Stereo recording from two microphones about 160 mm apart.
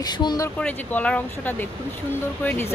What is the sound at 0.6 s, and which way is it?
Speech, 10° left (ahead or behind).